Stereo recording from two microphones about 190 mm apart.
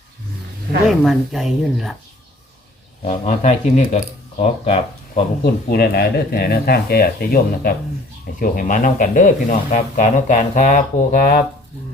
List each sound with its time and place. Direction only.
0.9 s speech: centre (ahead or behind)
3.0 s speech: 35° left (ahead or behind)
5.4 s speech: 55° left (ahead or behind)